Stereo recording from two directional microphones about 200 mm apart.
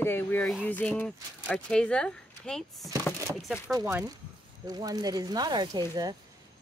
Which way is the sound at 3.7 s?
15° right (ahead or behind).